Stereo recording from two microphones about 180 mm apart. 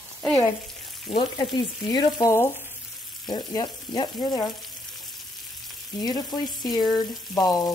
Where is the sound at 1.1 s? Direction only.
25° left (ahead or behind).